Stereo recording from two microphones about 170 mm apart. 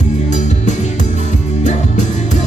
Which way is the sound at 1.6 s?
45° left (ahead or behind).